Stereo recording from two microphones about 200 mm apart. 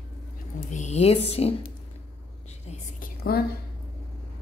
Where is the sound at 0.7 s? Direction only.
35° left (ahead or behind).